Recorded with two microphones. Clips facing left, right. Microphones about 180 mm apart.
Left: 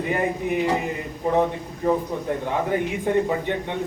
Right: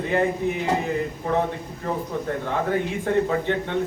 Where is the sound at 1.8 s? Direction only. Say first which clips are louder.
Left 4 dB; 15° left (ahead or behind).